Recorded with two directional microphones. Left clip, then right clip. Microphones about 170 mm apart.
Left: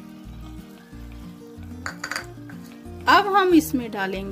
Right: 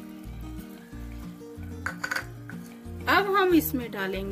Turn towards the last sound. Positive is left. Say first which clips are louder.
# left 4 dB
turn(degrees=40)  # may be behind; listen again after turning